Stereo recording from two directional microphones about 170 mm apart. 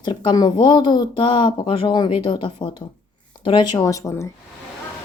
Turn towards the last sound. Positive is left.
turn(degrees=20)  # may be behind; listen again after turning